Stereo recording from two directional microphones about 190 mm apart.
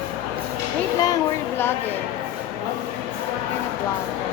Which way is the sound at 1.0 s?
15° left (ahead or behind).